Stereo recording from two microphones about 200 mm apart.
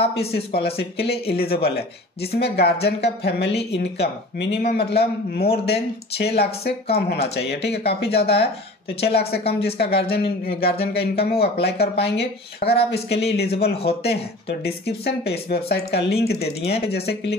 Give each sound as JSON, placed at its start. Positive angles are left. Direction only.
{"t": 0.5, "sound": "speech", "side_deg": 50}